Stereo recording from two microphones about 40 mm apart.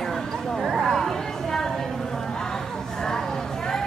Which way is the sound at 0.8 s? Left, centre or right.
Centre.